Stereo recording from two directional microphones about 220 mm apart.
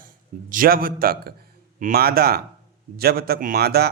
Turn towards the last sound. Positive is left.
turn(degrees=-45)  # may be behind; listen again after turning